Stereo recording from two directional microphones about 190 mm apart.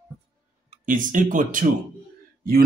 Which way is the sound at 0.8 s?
45° right (ahead or behind).